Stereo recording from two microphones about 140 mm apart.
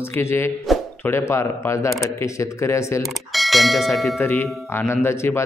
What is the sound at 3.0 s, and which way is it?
Speech, centre (ahead or behind).